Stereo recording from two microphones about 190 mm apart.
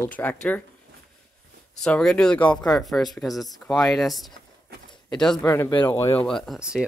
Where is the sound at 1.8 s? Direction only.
5° left (ahead or behind).